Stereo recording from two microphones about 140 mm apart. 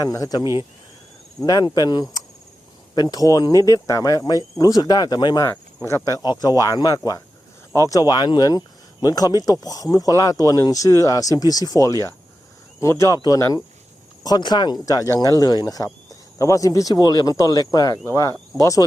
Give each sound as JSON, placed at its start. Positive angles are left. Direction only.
{"t": 0.0, "sound": "speech", "side_deg": 25}
{"t": 1.5, "sound": "speech", "side_deg": 25}